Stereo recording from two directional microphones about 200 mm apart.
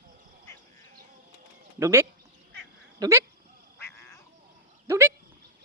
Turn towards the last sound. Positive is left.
turn(degrees=-10)  # may be behind; listen again after turning